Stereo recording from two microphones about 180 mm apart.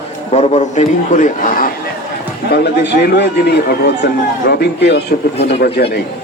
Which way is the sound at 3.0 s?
65° left (ahead or behind).